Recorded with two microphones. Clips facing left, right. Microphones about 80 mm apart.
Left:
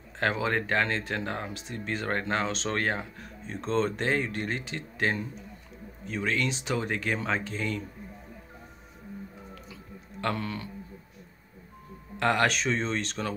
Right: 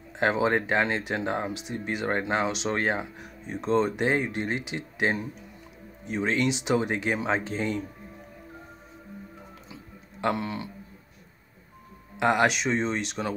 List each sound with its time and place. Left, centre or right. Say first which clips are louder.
0.2 s speech: right 4 dB; right
10.2 s speech: right 3 dB; centre
12.2 s speech: right 2 dB; centre